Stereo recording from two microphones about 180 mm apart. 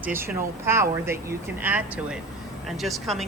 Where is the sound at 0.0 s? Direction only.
10° right (ahead or behind).